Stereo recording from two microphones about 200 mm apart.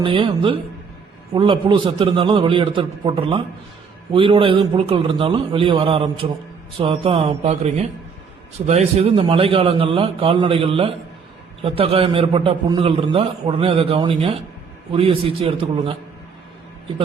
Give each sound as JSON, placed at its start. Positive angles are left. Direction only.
{"t": 0.0, "sound": "a man's voice", "side_deg": -25}